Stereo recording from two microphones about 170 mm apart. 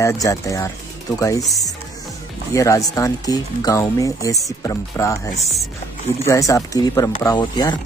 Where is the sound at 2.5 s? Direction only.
20° left (ahead or behind).